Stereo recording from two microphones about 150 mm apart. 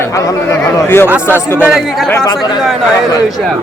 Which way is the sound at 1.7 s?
Centre (ahead or behind).